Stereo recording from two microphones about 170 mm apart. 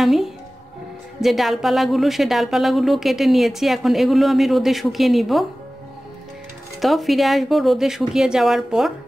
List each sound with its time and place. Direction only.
0.0 s speech: centre (ahead or behind)
6.8 s speech: centre (ahead or behind)